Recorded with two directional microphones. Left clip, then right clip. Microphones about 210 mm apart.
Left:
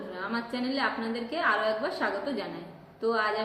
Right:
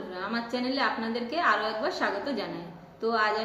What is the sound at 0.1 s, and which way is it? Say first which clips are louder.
A woman's voice: right 2 dB; 5° right (ahead or behind).